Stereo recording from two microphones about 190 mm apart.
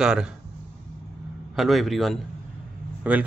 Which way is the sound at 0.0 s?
5° right (ahead or behind).